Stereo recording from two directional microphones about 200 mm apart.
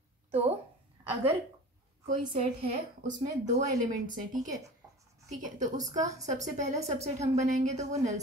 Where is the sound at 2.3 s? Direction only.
45° right (ahead or behind).